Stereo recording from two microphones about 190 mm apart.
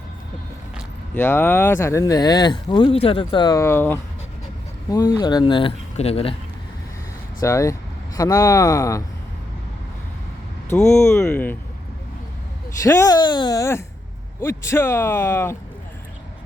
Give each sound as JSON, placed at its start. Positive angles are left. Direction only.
{"t": 1.1, "sound": "speech", "side_deg": 10}
{"t": 7.4, "sound": "speech", "side_deg": 15}
{"t": 10.7, "sound": "speech", "side_deg": 15}
{"t": 12.8, "sound": "speech", "side_deg": 15}